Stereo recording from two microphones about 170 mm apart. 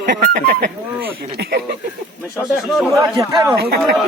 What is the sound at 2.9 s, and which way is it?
Speech, 20° right (ahead or behind).